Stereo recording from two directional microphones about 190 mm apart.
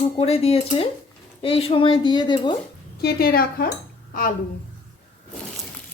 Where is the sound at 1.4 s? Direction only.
30° left (ahead or behind).